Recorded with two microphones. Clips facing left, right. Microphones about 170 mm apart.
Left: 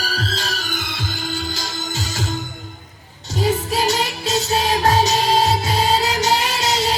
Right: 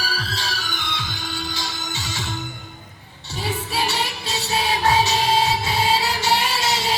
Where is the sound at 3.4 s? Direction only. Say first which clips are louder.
Left 6 dB; 40° left (ahead or behind).